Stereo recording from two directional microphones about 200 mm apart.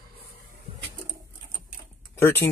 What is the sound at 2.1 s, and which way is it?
Speech, 10° left (ahead or behind).